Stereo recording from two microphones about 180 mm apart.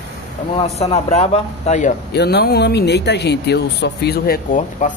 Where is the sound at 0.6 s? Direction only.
35° left (ahead or behind).